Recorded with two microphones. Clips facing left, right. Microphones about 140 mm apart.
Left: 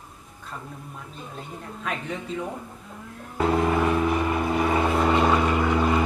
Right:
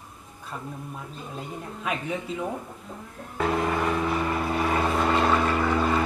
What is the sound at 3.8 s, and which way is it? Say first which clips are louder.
Vehicle: left 3 dB; 10° left (ahead or behind).